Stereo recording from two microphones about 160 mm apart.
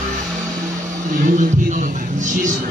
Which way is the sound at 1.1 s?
55° right (ahead or behind).